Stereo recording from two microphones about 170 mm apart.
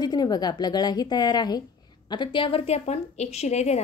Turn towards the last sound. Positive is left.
turn(degrees=40)  # may be behind; listen again after turning